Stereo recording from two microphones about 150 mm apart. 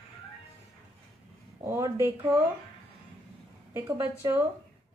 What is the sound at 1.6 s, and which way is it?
Speech, 20° right (ahead or behind).